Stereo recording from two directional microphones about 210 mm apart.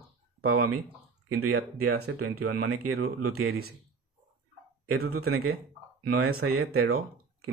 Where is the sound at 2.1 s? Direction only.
90° right.